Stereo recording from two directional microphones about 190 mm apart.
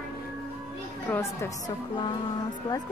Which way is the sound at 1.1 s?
15° left (ahead or behind).